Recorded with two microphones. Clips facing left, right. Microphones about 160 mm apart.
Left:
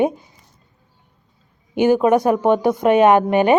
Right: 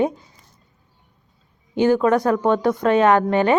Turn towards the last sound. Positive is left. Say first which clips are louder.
# left 3 dB
turn(degrees=20)  # may be behind; listen again after turning